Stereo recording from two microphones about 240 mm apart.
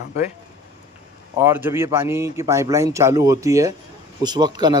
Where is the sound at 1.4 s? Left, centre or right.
Centre.